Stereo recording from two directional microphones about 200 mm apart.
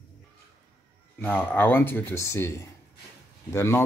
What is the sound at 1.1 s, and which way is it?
Speech, 10° left (ahead or behind).